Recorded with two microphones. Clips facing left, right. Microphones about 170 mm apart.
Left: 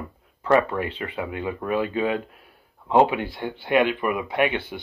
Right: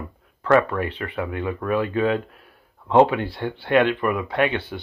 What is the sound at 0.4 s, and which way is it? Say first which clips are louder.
Speech: right 2 dB; 20° left (ahead or behind).